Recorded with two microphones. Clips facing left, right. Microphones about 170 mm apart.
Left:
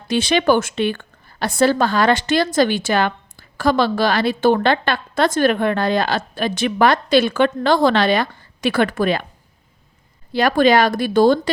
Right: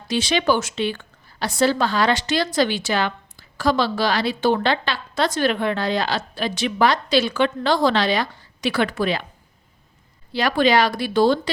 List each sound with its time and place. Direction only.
0.1 s a woman's voice: 55° left (ahead or behind)
10.3 s a woman's voice: 50° left (ahead or behind)